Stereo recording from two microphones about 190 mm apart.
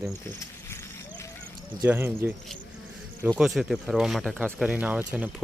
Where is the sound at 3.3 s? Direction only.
Centre (ahead or behind).